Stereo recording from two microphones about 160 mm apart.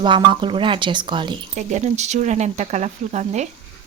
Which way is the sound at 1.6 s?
45° right (ahead or behind).